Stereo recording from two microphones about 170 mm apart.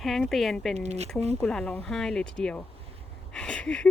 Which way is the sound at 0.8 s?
40° right (ahead or behind).